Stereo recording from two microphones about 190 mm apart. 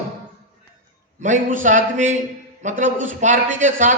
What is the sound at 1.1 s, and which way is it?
A man's voice, 40° right (ahead or behind).